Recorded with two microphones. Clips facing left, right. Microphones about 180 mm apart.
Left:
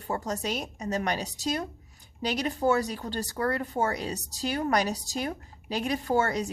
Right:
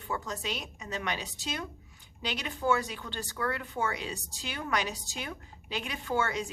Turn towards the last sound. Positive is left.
turn(degrees=40)  # may be behind; listen again after turning